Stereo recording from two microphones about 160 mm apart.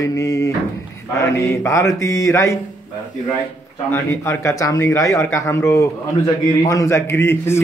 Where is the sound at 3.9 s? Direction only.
15° left (ahead or behind).